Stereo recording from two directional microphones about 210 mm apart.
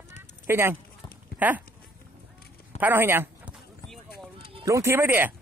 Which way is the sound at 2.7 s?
10° right (ahead or behind).